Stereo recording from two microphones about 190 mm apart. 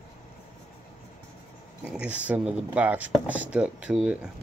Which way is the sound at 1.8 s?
5° right (ahead or behind).